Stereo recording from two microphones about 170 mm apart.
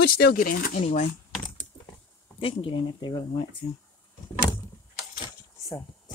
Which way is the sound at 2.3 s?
30° left (ahead or behind).